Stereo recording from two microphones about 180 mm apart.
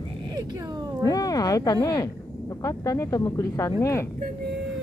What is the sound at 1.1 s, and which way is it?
Speech, 20° left (ahead or behind).